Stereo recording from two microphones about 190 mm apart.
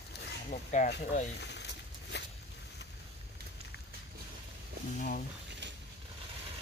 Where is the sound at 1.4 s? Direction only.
65° left (ahead or behind).